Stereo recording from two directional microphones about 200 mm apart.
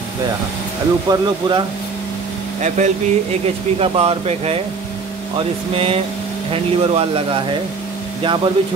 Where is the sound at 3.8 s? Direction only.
30° right (ahead or behind).